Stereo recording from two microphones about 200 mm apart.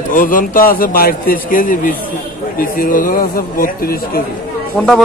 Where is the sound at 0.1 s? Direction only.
45° left (ahead or behind).